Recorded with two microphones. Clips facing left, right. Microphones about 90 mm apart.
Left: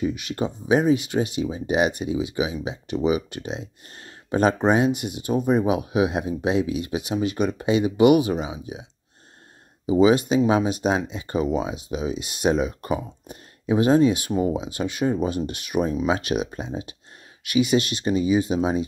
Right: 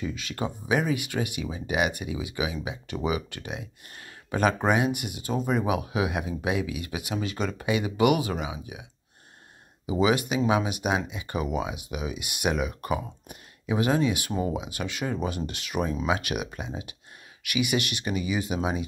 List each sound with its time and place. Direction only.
0.0 s speech: 20° left (ahead or behind)
9.9 s speech: 25° left (ahead or behind)